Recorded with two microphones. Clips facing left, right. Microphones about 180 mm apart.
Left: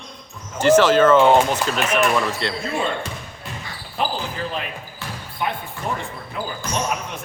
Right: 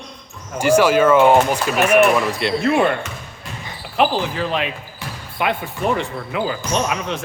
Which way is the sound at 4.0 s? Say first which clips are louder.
Right 7 dB; 90° right.